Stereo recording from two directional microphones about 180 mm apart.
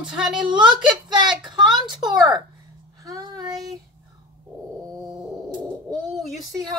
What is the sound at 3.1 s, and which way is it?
Child singing, 20° right (ahead or behind).